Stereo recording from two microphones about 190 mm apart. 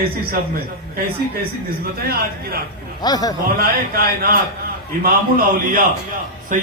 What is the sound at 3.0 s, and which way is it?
Speech, 20° left (ahead or behind).